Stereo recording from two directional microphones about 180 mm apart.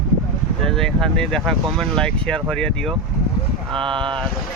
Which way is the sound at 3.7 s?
30° right (ahead or behind).